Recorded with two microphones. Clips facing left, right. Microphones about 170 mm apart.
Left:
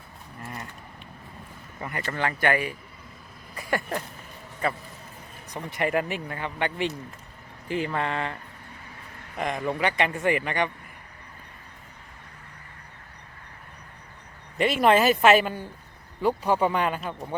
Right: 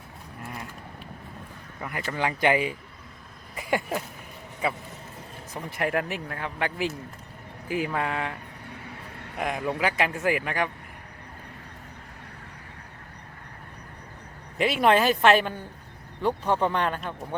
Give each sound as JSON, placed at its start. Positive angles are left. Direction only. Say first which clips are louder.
{"t": 0.4, "sound": "a sound", "louder": "even", "side_deg": 0}
{"t": 1.8, "sound": "speech", "louder": "even", "side_deg": 0}
{"t": 2.1, "sound": "speech", "louder": "right 2 dB", "side_deg": -15}
{"t": 3.5, "sound": "a sound", "louder": "right 1 dB", "side_deg": -15}
{"t": 4.6, "sound": "speech", "louder": "even", "side_deg": -10}
{"t": 9.4, "sound": "speech", "louder": "left 1 dB", "side_deg": -5}
{"t": 14.6, "sound": "speech", "louder": "left 1 dB", "side_deg": 0}